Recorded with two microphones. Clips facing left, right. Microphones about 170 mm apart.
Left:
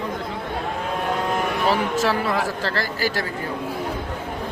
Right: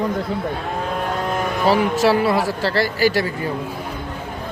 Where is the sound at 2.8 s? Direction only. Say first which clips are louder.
Right 9 dB; 10° right (ahead or behind).